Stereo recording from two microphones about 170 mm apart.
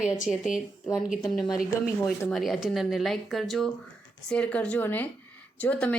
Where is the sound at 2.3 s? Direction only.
Centre (ahead or behind).